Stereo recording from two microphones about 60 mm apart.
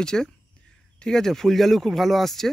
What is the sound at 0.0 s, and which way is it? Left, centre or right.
Speech, centre.